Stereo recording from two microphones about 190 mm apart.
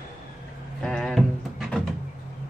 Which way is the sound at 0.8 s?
5° left (ahead or behind).